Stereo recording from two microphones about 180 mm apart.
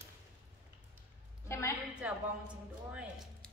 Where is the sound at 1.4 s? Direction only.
15° left (ahead or behind).